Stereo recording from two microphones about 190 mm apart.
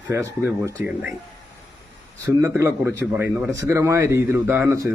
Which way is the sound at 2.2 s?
15° right (ahead or behind).